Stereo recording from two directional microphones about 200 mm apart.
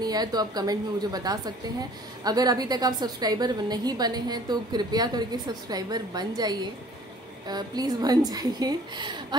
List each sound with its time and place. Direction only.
0.0 s a woman's voice: 20° right (ahead or behind)